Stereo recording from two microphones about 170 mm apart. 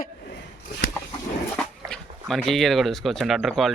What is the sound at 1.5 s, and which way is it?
Speech, 5° left (ahead or behind).